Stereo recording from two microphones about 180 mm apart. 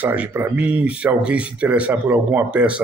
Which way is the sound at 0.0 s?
10° right (ahead or behind).